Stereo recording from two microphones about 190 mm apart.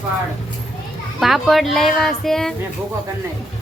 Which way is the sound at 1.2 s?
Centre (ahead or behind).